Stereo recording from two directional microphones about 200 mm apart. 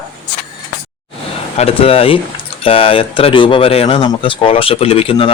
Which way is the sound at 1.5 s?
30° left (ahead or behind).